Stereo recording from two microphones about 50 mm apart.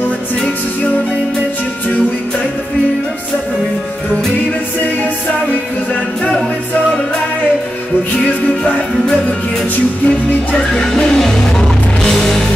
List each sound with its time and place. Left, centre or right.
10.0 s music: left
10.9 s music: centre